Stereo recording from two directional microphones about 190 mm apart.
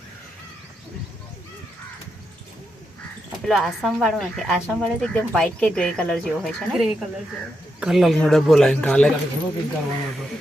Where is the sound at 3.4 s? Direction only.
Centre (ahead or behind).